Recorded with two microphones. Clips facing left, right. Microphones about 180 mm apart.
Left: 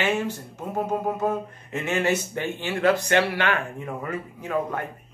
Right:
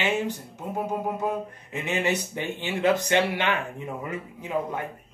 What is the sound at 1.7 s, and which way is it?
Speech, 15° right (ahead or behind).